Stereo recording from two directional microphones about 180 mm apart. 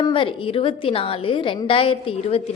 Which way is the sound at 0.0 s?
30° left (ahead or behind).